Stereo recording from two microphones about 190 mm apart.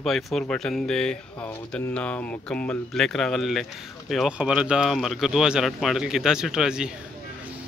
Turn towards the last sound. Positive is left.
turn(degrees=-5)  # may be behind; listen again after turning